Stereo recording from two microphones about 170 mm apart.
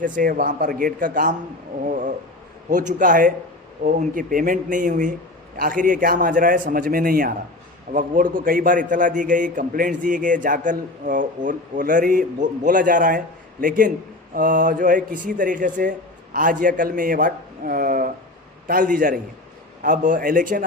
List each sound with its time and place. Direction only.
0.0 s a man's voice: 55° right (ahead or behind)